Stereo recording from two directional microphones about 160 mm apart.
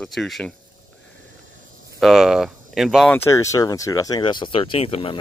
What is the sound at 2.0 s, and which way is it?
Speech, centre (ahead or behind).